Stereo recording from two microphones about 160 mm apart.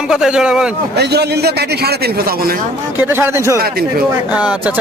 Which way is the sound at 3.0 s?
15° right (ahead or behind).